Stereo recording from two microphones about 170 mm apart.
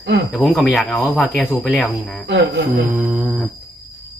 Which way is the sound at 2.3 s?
90° right.